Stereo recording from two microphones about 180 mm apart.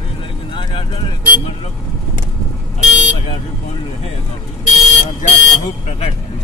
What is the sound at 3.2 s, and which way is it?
Speech, 35° left (ahead or behind).